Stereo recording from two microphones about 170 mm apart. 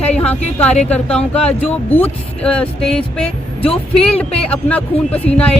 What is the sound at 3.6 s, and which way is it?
Speech, 35° left (ahead or behind).